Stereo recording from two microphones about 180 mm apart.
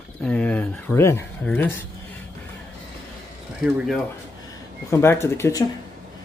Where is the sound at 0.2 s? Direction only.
5° left (ahead or behind).